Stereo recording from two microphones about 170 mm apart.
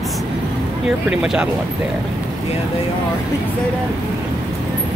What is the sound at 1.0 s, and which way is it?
Speech, 5° right (ahead or behind).